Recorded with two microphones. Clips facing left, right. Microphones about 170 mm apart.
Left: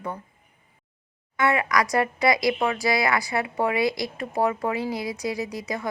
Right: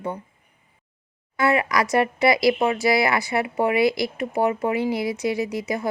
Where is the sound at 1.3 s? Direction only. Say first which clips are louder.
Right 2 dB; 30° right (ahead or behind).